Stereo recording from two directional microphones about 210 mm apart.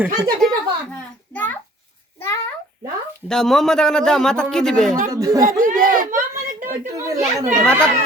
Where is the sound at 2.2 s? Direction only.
10° left (ahead or behind).